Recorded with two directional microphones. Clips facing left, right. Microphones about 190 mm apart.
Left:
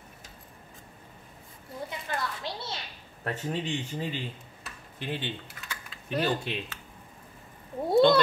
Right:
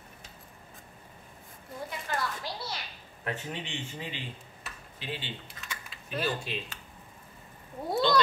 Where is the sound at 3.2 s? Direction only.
40° left (ahead or behind).